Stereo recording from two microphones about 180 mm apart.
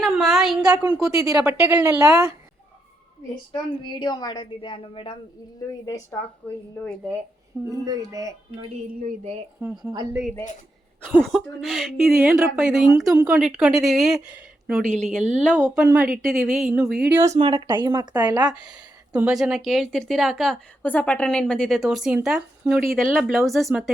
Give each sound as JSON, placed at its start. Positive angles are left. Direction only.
{"t": 0.0, "sound": "a sound", "side_deg": 0}
{"t": 0.8, "sound": "a woman's voice", "side_deg": -5}
{"t": 3.5, "sound": "a woman's voice", "side_deg": 25}
{"t": 7.6, "sound": "speech", "side_deg": -20}
{"t": 9.9, "sound": "speech", "side_deg": -20}
{"t": 11.2, "sound": "a woman's voice", "side_deg": 0}
{"t": 15.7, "sound": "a woman's voice", "side_deg": -5}
{"t": 17.3, "sound": "speech", "side_deg": -30}
{"t": 18.7, "sound": "a woman's voice", "side_deg": -5}